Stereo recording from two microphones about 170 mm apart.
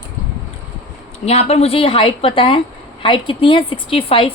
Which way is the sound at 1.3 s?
40° left (ahead or behind).